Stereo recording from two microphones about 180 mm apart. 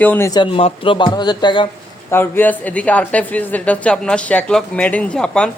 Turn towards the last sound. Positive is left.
turn(degrees=5)  # may be behind; listen again after turning